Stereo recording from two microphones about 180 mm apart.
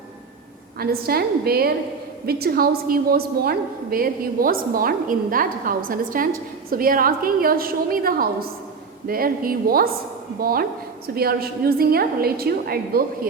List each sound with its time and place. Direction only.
0.8 s a woman's voice: 60° right (ahead or behind)